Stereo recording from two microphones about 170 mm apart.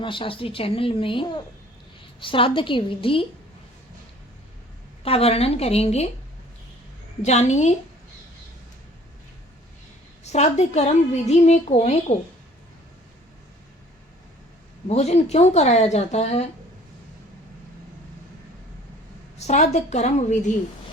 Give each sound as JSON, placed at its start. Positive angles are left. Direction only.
{"t": 0.0, "sound": "a woman's voice", "side_deg": 30}
{"t": 5.0, "sound": "a woman's voice", "side_deg": 35}
{"t": 7.2, "sound": "a woman's voice", "side_deg": 40}
{"t": 10.3, "sound": "a woman's voice", "side_deg": 40}
{"t": 14.8, "sound": "a woman's voice", "side_deg": 40}
{"t": 19.5, "sound": "a woman's voice", "side_deg": 40}